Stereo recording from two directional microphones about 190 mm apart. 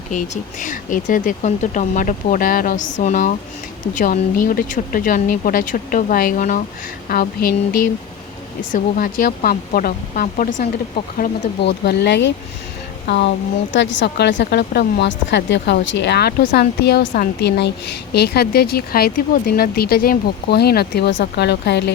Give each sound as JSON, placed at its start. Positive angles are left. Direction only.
{"t": 0.6, "sound": "speech", "side_deg": 45}
{"t": 11.2, "sound": "speech", "side_deg": 60}